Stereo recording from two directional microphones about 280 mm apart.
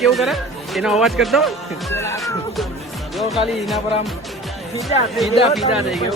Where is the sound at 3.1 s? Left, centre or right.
Centre.